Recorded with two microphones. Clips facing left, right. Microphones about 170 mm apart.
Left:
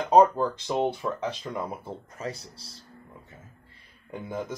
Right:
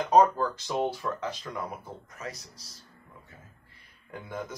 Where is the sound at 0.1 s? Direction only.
20° left (ahead or behind).